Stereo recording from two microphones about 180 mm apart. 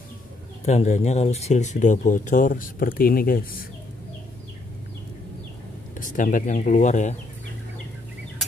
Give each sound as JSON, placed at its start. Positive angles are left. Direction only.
{"t": 0.7, "sound": "speech", "side_deg": 40}
{"t": 5.9, "sound": "speech", "side_deg": 45}